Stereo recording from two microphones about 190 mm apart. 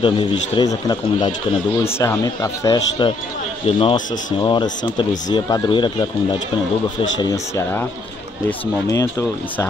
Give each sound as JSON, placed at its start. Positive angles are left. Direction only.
{"t": 0.0, "sound": "a man's voice", "side_deg": 25}
{"t": 7.2, "sound": "speech", "side_deg": 15}